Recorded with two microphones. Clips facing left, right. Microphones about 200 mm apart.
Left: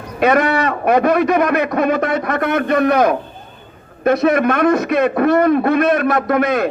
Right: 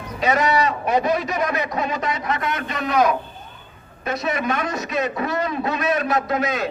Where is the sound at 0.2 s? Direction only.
60° left (ahead or behind).